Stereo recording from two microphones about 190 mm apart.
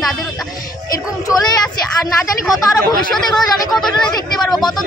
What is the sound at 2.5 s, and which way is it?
Speech, 20° left (ahead or behind).